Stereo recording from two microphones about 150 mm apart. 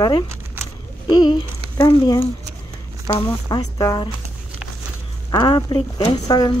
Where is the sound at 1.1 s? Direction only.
30° left (ahead or behind).